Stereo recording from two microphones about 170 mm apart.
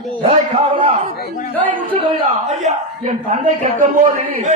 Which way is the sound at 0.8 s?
45° right (ahead or behind).